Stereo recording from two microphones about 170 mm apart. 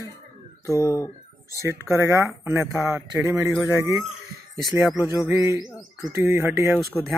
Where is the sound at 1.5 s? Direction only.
15° right (ahead or behind).